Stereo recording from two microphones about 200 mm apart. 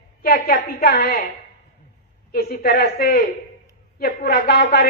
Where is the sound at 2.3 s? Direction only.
50° left (ahead or behind).